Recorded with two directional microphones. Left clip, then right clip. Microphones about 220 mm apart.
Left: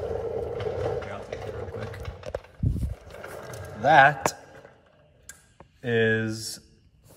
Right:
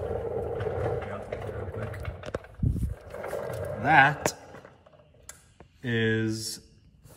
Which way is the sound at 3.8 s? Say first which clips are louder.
Left 3 dB; 15° left (ahead or behind).